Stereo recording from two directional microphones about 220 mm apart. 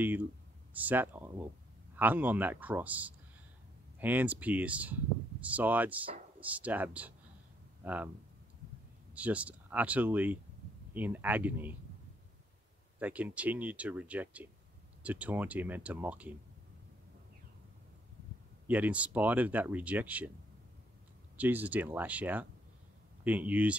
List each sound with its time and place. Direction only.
0.7 s speech: 10° right (ahead or behind)
9.1 s speech: 5° right (ahead or behind)
13.0 s speech: 5° right (ahead or behind)
18.7 s speech: 5° right (ahead or behind)
21.4 s speech: 5° right (ahead or behind)